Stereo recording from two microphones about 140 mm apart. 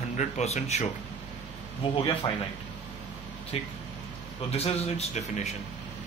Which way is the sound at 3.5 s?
45° left (ahead or behind).